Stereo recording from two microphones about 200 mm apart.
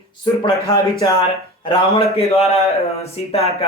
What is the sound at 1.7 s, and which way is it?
A woman's voice, 30° left (ahead or behind).